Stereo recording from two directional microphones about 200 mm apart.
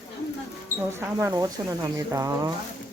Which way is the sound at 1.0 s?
10° right (ahead or behind).